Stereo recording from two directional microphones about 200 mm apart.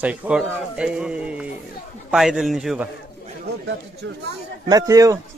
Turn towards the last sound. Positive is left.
turn(degrees=-15)  # may be behind; listen again after turning